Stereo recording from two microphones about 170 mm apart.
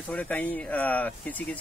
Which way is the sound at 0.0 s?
10° left (ahead or behind).